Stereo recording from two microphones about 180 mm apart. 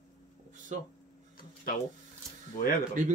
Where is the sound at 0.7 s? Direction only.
45° right (ahead or behind).